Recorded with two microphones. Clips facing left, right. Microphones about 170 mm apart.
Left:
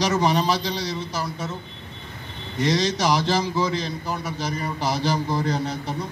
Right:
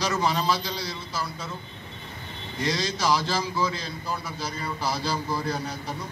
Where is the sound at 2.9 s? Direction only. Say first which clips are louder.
Left 4 dB; 20° left (ahead or behind).